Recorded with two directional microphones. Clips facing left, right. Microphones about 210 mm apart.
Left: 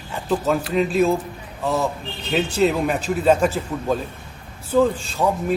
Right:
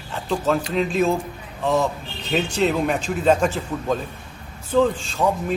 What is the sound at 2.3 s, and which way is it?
A man's voice, 5° left (ahead or behind).